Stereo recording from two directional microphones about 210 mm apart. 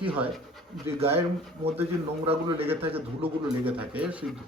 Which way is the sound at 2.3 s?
25° right (ahead or behind).